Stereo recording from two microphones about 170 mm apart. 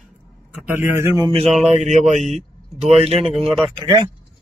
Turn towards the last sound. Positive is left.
turn(degrees=-30)  # may be behind; listen again after turning